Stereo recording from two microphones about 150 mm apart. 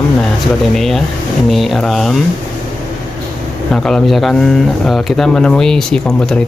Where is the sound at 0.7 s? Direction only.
Centre (ahead or behind).